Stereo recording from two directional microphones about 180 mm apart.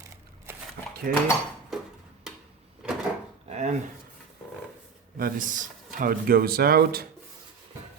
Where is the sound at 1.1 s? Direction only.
55° right (ahead or behind).